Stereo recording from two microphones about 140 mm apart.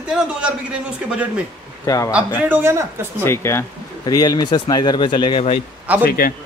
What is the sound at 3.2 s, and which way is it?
A man's voice, 20° left (ahead or behind).